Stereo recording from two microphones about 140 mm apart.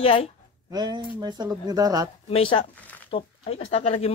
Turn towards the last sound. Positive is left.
turn(degrees=45)  # may be behind; listen again after turning